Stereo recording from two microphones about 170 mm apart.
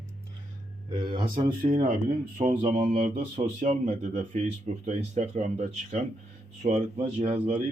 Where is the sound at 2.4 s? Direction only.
55° right (ahead or behind).